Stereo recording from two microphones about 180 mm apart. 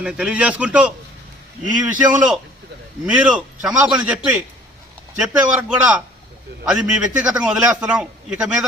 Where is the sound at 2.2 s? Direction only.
Centre (ahead or behind).